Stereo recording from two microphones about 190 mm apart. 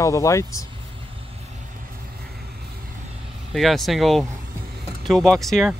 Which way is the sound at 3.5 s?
Centre (ahead or behind).